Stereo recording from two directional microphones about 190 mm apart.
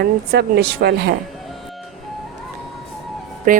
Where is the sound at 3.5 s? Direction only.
45° right (ahead or behind).